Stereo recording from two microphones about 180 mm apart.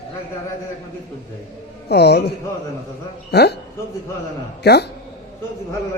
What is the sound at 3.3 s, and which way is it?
Speech, 65° left (ahead or behind).